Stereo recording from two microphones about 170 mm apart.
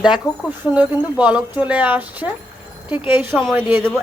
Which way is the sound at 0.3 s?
20° left (ahead or behind).